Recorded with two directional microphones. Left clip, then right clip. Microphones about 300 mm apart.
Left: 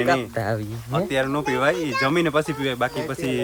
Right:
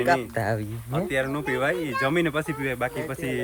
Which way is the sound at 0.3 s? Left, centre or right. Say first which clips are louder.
Left 1 dB; centre.